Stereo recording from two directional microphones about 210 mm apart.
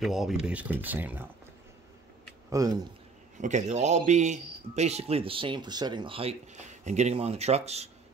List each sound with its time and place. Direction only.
0.0 s speech: centre (ahead or behind)
2.5 s speech: 15° right (ahead or behind)
3.3 s speech: 35° right (ahead or behind)